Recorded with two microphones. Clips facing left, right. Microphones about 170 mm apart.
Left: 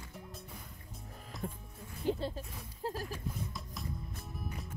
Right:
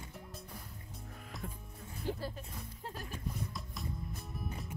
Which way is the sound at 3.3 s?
Centre (ahead or behind).